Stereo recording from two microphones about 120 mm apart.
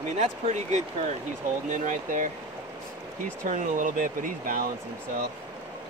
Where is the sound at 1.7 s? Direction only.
90° right.